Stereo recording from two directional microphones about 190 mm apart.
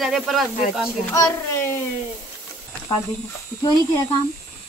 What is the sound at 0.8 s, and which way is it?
Speech, 15° left (ahead or behind).